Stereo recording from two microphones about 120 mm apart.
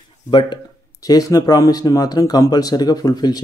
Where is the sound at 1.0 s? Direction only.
30° left (ahead or behind).